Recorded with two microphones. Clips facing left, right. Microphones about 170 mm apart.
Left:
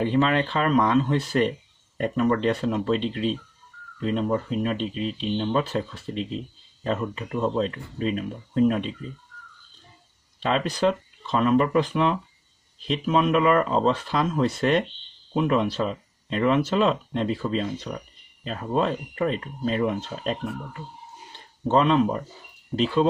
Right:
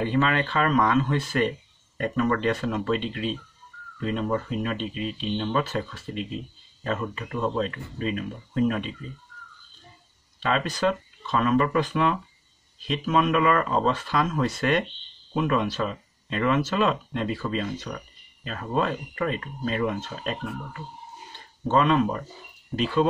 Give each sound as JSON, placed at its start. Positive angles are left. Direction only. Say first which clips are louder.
{"t": 0.0, "sound": "speech", "louder": "left 2 dB", "side_deg": 25}
{"t": 10.4, "sound": "speech", "louder": "left 2 dB", "side_deg": 30}